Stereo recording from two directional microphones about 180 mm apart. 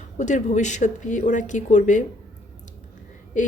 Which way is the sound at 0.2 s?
40° left (ahead or behind).